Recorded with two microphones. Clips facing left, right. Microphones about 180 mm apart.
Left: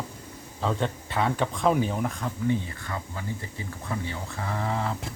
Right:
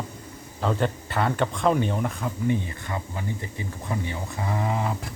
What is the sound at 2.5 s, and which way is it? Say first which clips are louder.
Speech: right 1 dB; 20° right (ahead or behind).